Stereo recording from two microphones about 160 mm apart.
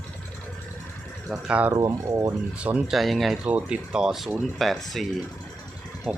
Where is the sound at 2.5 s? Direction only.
10° right (ahead or behind).